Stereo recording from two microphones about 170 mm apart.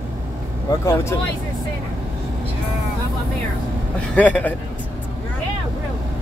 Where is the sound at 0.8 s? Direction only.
15° left (ahead or behind).